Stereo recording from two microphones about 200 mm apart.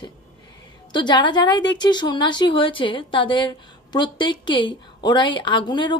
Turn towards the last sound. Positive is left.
turn(degrees=20)  # may be behind; listen again after turning